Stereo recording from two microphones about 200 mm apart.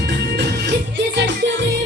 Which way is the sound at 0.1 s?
65° right (ahead or behind).